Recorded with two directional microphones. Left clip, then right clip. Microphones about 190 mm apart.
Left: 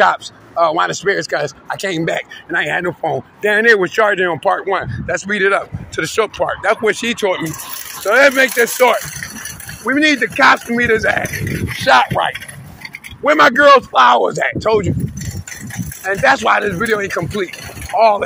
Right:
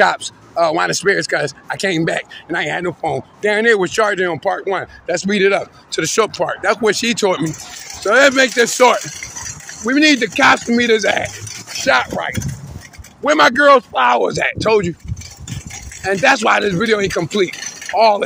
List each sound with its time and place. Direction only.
0.0 s speech: 35° right (ahead or behind)
5.0 s speech: 80° right
6.4 s speech: 30° right (ahead or behind)
6.9 s speech: 60° right (ahead or behind)
8.0 s speech: 40° right (ahead or behind)
10.0 s speech: 60° right (ahead or behind)
11.8 s speech: 20° right (ahead or behind)
16.0 s speech: 55° right (ahead or behind)